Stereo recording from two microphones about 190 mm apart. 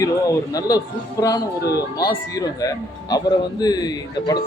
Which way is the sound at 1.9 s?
20° left (ahead or behind).